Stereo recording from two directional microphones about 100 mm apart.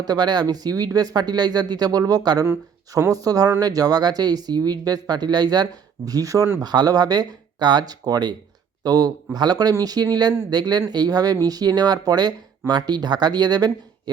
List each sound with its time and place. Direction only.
0.0 s speech: 45° right (ahead or behind)
2.5 s speech: 30° right (ahead or behind)
6.6 s speech: 40° right (ahead or behind)